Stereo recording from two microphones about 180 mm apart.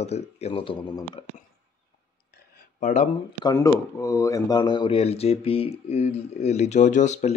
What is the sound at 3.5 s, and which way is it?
Speech, 15° left (ahead or behind).